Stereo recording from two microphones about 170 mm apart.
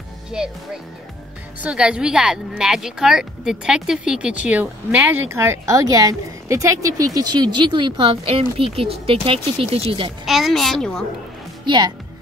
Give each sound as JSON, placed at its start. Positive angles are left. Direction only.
{"t": 0.3, "sound": "speech", "side_deg": -5}
{"t": 1.6, "sound": "speech", "side_deg": -5}
{"t": 10.2, "sound": "speech", "side_deg": 0}
{"t": 11.6, "sound": "a woman's voice", "side_deg": -25}